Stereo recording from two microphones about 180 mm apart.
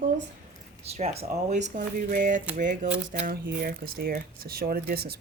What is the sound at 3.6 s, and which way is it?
Speech, 55° right (ahead or behind).